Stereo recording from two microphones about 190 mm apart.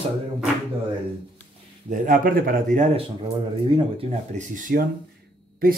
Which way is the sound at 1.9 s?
45° right (ahead or behind).